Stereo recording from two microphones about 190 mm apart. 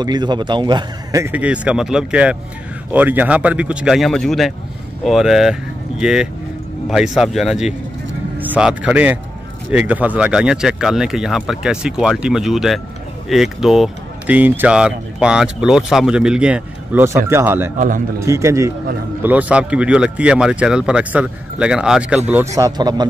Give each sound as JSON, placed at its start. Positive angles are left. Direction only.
{"t": 0.0, "sound": "speech", "side_deg": -25}
{"t": 17.7, "sound": "a man's voice", "side_deg": -45}
{"t": 18.2, "sound": "speech", "side_deg": -15}